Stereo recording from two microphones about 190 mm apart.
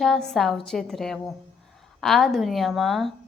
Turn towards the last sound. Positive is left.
turn(degrees=0)  # may be behind; listen again after turning